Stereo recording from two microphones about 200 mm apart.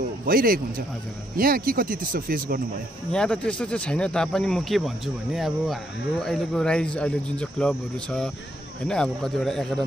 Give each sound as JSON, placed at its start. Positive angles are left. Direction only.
{"t": 0.3, "sound": "speech", "side_deg": -45}
{"t": 3.1, "sound": "speech", "side_deg": 5}